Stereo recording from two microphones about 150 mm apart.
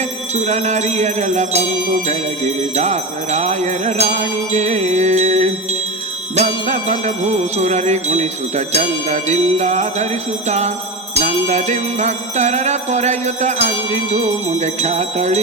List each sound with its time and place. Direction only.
0.3 s jingle bell: 50° right (ahead or behind)
2.7 s jingle bell: 50° right (ahead or behind)
11.2 s jingle bell: 50° right (ahead or behind)